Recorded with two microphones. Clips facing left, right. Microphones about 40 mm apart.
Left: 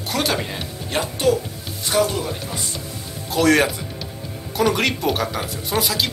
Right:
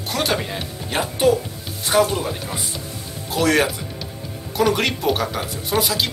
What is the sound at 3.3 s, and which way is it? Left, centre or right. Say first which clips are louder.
Speech: left 2 dB; centre.